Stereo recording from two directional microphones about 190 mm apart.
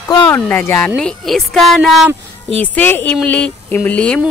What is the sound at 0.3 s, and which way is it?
Speech, 10° left (ahead or behind).